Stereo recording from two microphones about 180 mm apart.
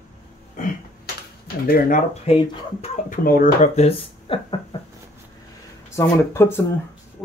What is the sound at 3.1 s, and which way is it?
Speech, 50° left (ahead or behind).